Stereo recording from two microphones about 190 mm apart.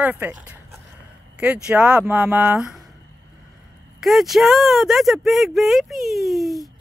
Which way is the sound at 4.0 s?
Centre (ahead or behind).